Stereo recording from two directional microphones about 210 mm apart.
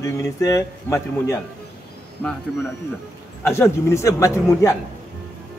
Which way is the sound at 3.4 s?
10° left (ahead or behind).